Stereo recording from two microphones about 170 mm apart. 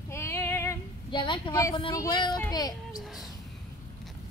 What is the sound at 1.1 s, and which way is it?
A woman's voice, 30° left (ahead or behind).